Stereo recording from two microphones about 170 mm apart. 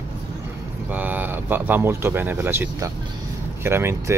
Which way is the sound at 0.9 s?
10° right (ahead or behind).